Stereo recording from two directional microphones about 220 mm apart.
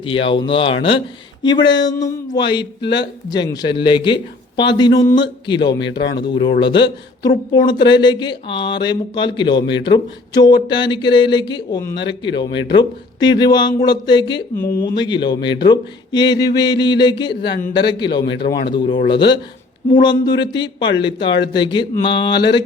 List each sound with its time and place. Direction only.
0.0 s speech: 25° left (ahead or behind)
2.8 s speech: 50° left (ahead or behind)
3.2 s speech: 20° left (ahead or behind)
5.7 s speech: 50° left (ahead or behind)
6.1 s speech: 20° left (ahead or behind)
18.3 s speech: 50° left (ahead or behind)
18.7 s speech: 20° left (ahead or behind)